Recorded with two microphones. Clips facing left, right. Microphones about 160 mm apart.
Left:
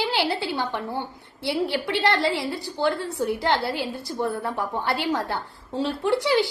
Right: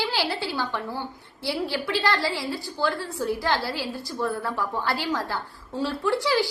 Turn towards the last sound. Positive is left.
turn(degrees=20)  # may be behind; listen again after turning